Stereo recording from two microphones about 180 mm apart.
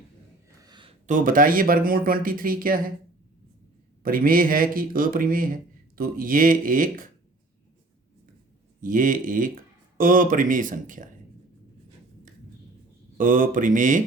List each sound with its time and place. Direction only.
0.6 s a sound: 25° right (ahead or behind)
1.0 s speech: 50° right (ahead or behind)
4.0 s speech: 50° right (ahead or behind)
8.8 s speech: 50° right (ahead or behind)
13.1 s speech: 50° right (ahead or behind)